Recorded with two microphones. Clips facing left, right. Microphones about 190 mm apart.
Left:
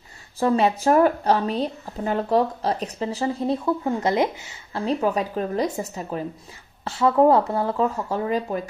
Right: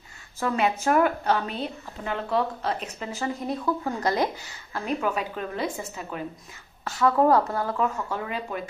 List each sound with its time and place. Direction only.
0.4 s speech: 35° left (ahead or behind)